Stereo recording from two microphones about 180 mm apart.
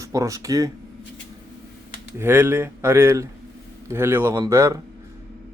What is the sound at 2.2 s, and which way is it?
Speech, 10° right (ahead or behind).